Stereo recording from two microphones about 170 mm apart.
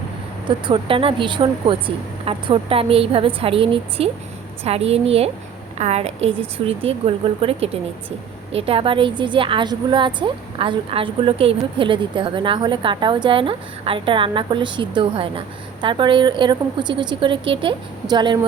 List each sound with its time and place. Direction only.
0.4 s a woman's voice: 30° right (ahead or behind)